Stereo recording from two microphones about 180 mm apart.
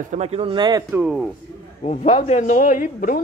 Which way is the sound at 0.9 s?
Centre (ahead or behind).